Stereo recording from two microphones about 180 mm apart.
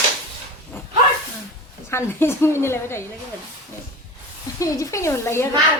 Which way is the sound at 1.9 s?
15° left (ahead or behind).